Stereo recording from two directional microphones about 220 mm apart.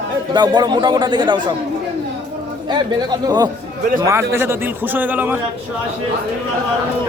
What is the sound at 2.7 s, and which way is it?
A man's voice, 20° right (ahead or behind).